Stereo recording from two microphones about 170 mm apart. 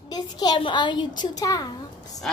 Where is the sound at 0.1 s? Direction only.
25° left (ahead or behind).